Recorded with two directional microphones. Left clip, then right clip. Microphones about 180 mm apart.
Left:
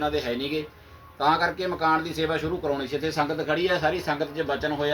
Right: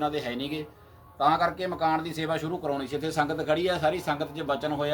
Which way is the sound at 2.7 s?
20° right (ahead or behind).